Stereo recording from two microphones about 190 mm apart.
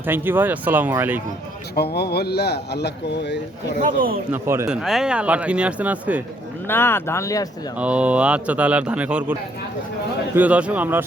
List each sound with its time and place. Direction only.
0.0 s a man's voice: 10° right (ahead or behind)
1.7 s speech: 60° left (ahead or behind)
3.8 s speech: 45° right (ahead or behind)
4.3 s a man's voice: 15° right (ahead or behind)
4.8 s a man's voice: centre (ahead or behind)
6.7 s speech: 10° left (ahead or behind)
7.8 s a man's voice: 5° right (ahead or behind)
10.3 s a man's voice: 10° right (ahead or behind)